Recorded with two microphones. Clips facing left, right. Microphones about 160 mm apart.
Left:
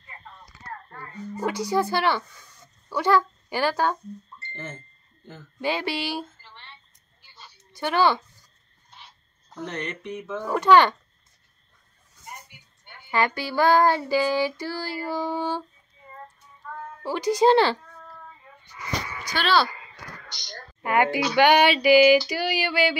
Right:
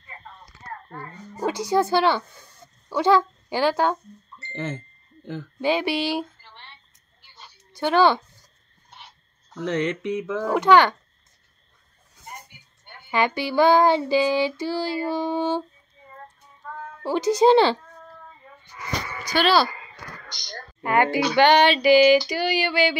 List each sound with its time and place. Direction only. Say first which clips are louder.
1.3 s child singing: right 2 dB; 20° right (ahead or behind)
2.9 s speech: right 3 dB; 20° right (ahead or behind)
4.5 s a sound: right 8 dB; 85° right
5.6 s child singing: right 4 dB; 20° right (ahead or behind)
7.8 s child singing: right 3 dB; 20° right (ahead or behind)
9.7 s mantra: right 9 dB; 90° right
10.5 s a child's voice: even; 15° right (ahead or behind)
13.1 s child singing: right 2 dB; 20° right (ahead or behind)
17.0 s child singing: right 2 dB; 20° right (ahead or behind)
19.3 s speech: right 3 dB; 5° right (ahead or behind)
20.8 s female singing: right 2 dB; 10° left (ahead or behind)